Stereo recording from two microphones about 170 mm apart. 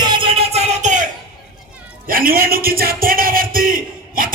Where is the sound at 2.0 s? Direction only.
55° right (ahead or behind).